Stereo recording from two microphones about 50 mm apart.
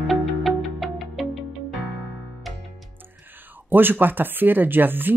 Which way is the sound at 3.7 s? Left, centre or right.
Right.